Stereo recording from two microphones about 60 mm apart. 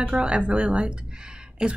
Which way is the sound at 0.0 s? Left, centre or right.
Centre.